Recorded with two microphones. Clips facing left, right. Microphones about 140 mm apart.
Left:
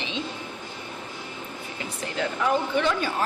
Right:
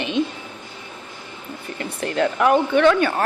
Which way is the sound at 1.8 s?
60° right (ahead or behind).